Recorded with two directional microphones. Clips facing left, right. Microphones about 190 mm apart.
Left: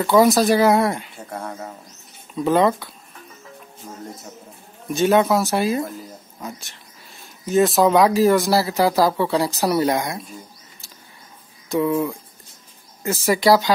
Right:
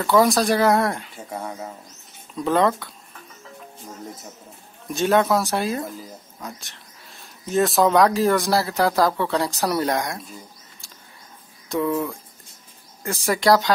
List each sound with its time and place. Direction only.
0.2 s speech: centre (ahead or behind)
4.9 s speech: centre (ahead or behind)
7.4 s speech: centre (ahead or behind)
11.7 s speech: 5° left (ahead or behind)